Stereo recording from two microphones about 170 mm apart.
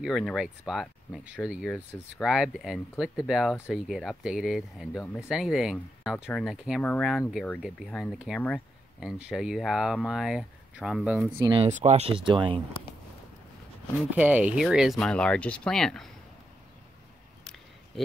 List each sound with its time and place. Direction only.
0.0 s speech: centre (ahead or behind)
9.0 s speech: 5° right (ahead or behind)
11.7 s speech: 40° right (ahead or behind)
14.1 s speech: 10° right (ahead or behind)